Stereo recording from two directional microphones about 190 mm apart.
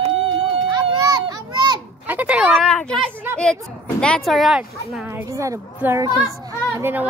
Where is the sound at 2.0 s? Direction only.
5° right (ahead or behind).